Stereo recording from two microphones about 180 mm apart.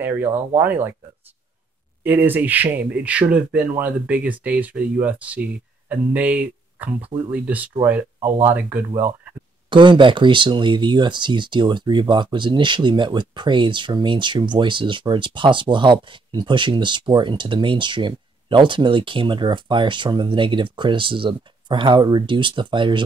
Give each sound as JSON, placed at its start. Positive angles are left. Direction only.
{"t": 0.6, "sound": "speech", "side_deg": -10}
{"t": 2.0, "sound": "speech", "side_deg": -10}
{"t": 9.7, "sound": "speech", "side_deg": -25}